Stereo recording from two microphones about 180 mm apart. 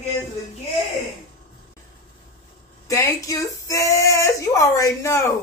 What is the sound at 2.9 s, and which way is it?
Speech, 20° left (ahead or behind).